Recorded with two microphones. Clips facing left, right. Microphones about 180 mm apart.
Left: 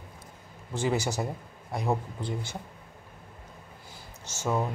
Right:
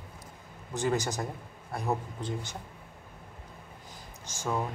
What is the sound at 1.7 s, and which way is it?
Speech, 15° left (ahead or behind).